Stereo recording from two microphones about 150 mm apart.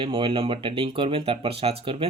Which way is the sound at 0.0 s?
35° right (ahead or behind).